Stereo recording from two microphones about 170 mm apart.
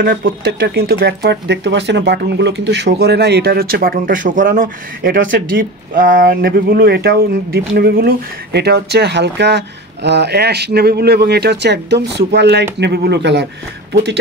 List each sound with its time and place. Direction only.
0.0 s speech: 60° right (ahead or behind); by 13.5 s 85° right